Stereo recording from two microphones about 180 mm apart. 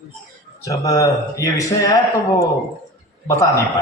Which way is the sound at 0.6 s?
20° left (ahead or behind).